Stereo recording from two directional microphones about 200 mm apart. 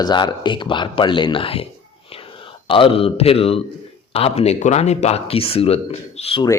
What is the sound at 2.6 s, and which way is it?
Speech, 25° left (ahead or behind).